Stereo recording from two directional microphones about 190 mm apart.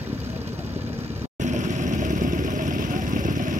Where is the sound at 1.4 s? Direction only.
40° right (ahead or behind).